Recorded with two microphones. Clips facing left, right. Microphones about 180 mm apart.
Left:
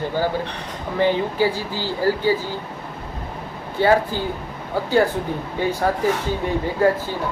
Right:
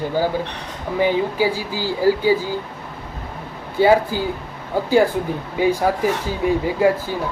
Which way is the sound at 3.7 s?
10° right (ahead or behind).